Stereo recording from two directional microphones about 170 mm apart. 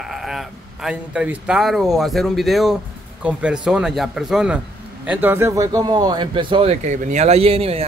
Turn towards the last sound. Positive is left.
turn(degrees=-35)  # may be behind; listen again after turning